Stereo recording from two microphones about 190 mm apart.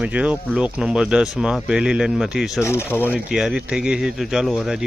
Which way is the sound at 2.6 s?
10° left (ahead or behind).